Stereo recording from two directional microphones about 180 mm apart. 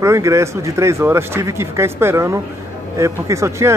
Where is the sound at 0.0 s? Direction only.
15° right (ahead or behind).